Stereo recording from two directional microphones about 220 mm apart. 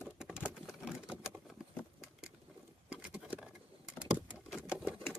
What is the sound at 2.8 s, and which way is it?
Patter, 5° right (ahead or behind).